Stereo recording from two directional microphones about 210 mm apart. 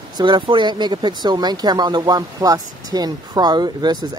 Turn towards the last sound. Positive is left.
turn(degrees=-20)  # may be behind; listen again after turning